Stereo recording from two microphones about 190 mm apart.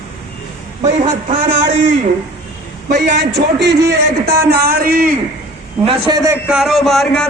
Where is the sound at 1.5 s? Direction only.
65° right (ahead or behind); by 5.1 s 50° right (ahead or behind).